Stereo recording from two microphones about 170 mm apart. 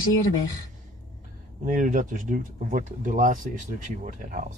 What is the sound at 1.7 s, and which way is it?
Speech, 50° right (ahead or behind).